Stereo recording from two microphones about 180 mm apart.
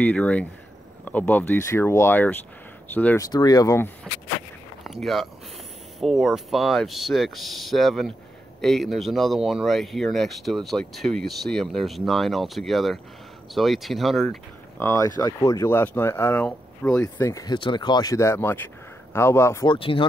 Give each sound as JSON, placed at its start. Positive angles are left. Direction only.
{"t": 0.0, "sound": "speech", "side_deg": 10}
{"t": 3.3, "sound": "speech", "side_deg": 20}
{"t": 4.8, "sound": "speech", "side_deg": 0}
{"t": 14.8, "sound": "speech", "side_deg": 15}
{"t": 19.7, "sound": "speech", "side_deg": 30}